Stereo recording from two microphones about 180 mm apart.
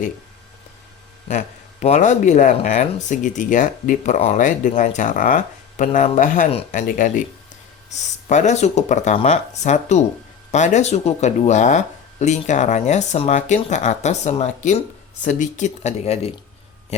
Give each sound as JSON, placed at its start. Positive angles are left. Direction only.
{"t": 1.3, "sound": "speech", "side_deg": 40}
{"t": 8.3, "sound": "speech", "side_deg": 40}
{"t": 16.9, "sound": "a sound", "side_deg": 35}